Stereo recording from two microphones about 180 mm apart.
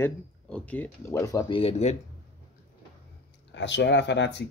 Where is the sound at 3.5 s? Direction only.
80° left.